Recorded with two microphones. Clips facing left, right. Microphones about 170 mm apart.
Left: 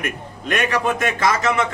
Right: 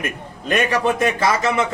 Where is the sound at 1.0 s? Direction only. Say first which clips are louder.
Right 2 dB; 30° right (ahead or behind).